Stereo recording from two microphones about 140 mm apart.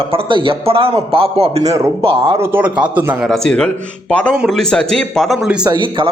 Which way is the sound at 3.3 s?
5° left (ahead or behind).